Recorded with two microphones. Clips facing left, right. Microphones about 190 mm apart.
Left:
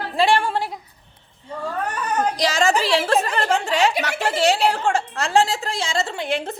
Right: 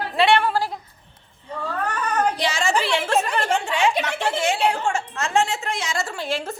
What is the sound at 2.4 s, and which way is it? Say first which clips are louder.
Speech: left 3 dB; 40° left (ahead or behind).